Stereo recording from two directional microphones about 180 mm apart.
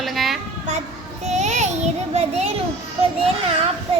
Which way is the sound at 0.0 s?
Centre (ahead or behind).